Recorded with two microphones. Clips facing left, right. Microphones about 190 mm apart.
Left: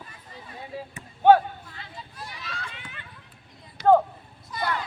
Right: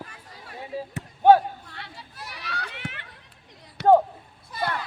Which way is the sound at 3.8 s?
65° right (ahead or behind).